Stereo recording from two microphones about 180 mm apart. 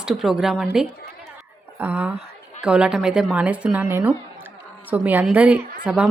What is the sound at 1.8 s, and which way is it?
A woman's voice, 10° right (ahead or behind).